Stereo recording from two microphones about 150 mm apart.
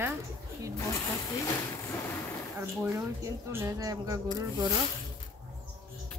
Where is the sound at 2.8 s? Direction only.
15° right (ahead or behind).